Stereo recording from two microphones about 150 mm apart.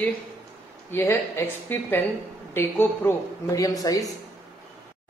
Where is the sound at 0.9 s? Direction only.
15° left (ahead or behind).